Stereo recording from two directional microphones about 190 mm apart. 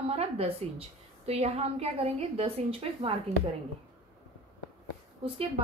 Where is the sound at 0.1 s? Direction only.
30° right (ahead or behind).